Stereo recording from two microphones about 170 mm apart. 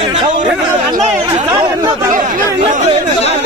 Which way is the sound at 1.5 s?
25° right (ahead or behind).